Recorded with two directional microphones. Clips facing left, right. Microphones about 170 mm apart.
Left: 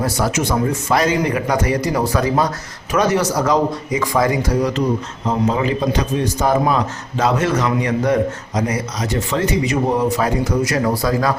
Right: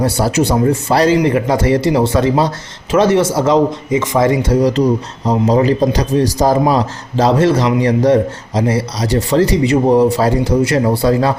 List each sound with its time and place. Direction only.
0.0 s a man's voice: 30° right (ahead or behind)